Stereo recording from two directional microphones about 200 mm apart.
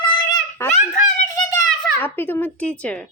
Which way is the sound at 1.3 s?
15° left (ahead or behind).